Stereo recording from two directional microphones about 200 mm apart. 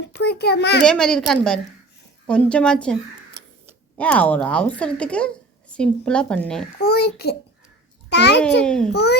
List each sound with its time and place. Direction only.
0.1 s a child's voice: 55° left (ahead or behind)
0.9 s a woman's voice: 5° left (ahead or behind)
6.8 s a child's voice: 50° left (ahead or behind)
8.6 s a woman's voice: 5° left (ahead or behind)
8.9 s a child's voice: 55° left (ahead or behind)